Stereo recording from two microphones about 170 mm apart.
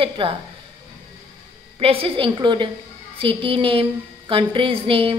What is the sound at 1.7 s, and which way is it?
Speech, 35° right (ahead or behind).